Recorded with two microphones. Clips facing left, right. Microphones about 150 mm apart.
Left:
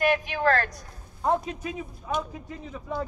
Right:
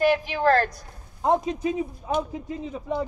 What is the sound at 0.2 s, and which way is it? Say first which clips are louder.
Speech: right 3 dB; 30° right (ahead or behind).